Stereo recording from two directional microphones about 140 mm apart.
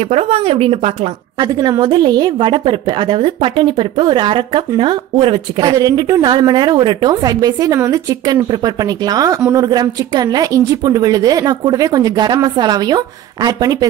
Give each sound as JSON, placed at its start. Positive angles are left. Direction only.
{"t": 0.1, "sound": "speech", "side_deg": -45}
{"t": 1.4, "sound": "speech", "side_deg": -30}
{"t": 5.6, "sound": "a woman's voice", "side_deg": -25}